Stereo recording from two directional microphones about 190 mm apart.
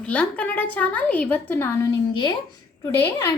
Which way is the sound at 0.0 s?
5° left (ahead or behind).